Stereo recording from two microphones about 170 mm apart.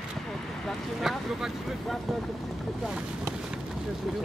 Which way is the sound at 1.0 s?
Centre (ahead or behind).